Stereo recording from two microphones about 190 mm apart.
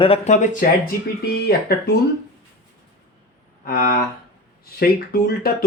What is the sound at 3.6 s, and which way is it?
Speech, 55° left (ahead or behind).